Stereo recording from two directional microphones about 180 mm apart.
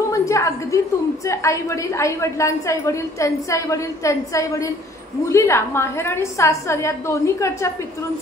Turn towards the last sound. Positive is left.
turn(degrees=15)  # may be behind; listen again after turning